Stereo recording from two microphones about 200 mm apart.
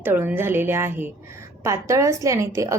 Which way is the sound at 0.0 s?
10° right (ahead or behind).